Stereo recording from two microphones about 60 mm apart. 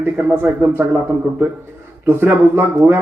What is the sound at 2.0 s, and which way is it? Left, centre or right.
Speech, right.